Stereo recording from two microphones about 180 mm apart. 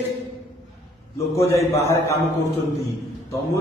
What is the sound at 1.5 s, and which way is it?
Speech, 15° left (ahead or behind).